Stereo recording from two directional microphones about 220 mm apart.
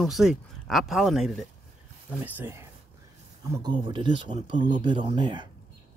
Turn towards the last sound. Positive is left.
turn(degrees=-20)  # may be behind; listen again after turning